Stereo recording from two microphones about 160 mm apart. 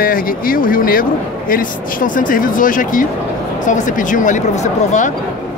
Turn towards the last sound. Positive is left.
turn(degrees=55)  # may be behind; listen again after turning